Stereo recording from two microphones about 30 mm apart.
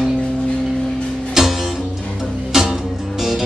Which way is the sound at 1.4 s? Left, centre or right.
Centre.